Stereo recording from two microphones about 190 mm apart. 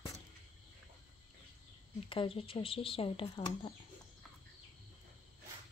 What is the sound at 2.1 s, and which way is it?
Speech, 30° left (ahead or behind).